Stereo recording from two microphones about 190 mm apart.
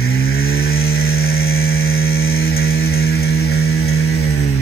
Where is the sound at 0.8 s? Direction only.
55° left (ahead or behind); by 4.5 s 75° left (ahead or behind).